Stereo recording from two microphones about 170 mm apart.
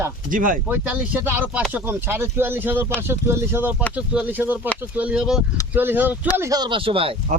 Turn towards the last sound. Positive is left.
turn(degrees=-30)  # may be behind; listen again after turning